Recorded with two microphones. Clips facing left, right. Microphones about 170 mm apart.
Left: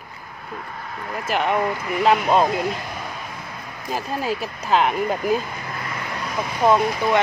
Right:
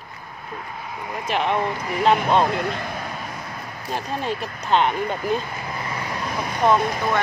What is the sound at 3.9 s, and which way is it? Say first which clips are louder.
Speech: left 1 dB; 5° left (ahead or behind).